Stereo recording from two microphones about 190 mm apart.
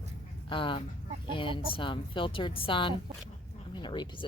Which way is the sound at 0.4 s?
25° left (ahead or behind).